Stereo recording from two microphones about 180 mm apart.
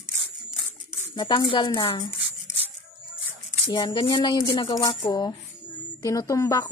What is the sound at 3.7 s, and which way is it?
A woman's voice, 25° left (ahead or behind).